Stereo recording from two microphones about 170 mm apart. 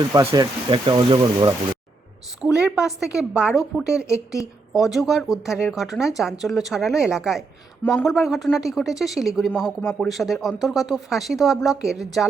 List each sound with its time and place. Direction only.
0.1 s speech: 20° right (ahead or behind)
2.6 s speech: 5° right (ahead or behind)